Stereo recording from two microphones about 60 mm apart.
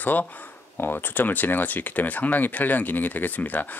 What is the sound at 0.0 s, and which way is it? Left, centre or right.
Speech, left.